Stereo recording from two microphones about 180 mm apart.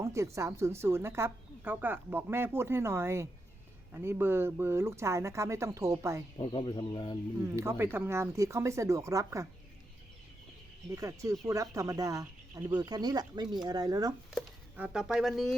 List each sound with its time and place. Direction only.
0.0 s speech: 15° right (ahead or behind)
6.4 s speech: 30° left (ahead or behind)
7.5 s speech: 15° right (ahead or behind)
10.9 s speech: 15° right (ahead or behind)
14.3 s speech: centre (ahead or behind)